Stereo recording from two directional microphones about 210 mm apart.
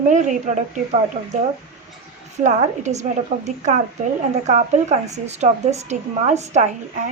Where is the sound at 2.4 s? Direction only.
35° right (ahead or behind).